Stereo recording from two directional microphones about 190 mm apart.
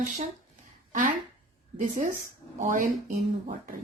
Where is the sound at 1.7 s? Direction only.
40° right (ahead or behind).